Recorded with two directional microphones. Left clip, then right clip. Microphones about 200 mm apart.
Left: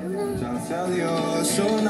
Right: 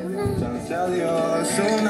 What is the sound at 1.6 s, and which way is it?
Speech, 10° right (ahead or behind).